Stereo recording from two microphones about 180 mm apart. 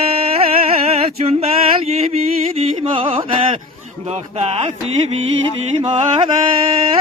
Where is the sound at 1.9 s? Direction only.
35° right (ahead or behind).